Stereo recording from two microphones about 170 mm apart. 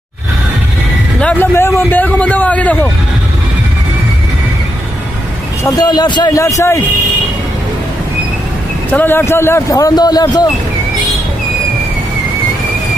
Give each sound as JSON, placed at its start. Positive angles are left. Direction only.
{"t": 1.2, "sound": "a man's voice", "side_deg": 10}
{"t": 5.6, "sound": "a man's voice", "side_deg": 20}
{"t": 8.9, "sound": "a man's voice", "side_deg": 10}